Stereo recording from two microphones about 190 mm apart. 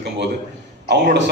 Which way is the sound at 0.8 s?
60° right (ahead or behind).